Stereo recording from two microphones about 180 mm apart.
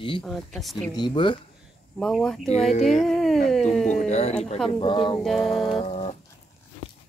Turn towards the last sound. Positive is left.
turn(degrees=35)  # may be behind; listen again after turning